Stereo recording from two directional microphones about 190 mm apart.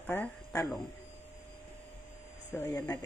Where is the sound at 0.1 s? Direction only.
10° left (ahead or behind).